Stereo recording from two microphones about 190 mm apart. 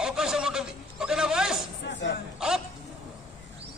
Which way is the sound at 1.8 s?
65° left (ahead or behind).